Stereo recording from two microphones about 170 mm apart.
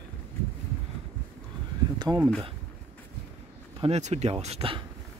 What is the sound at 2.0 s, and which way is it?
Speech, 25° right (ahead or behind).